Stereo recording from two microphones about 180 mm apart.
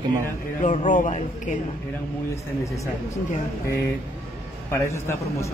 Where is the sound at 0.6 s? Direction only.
40° left (ahead or behind).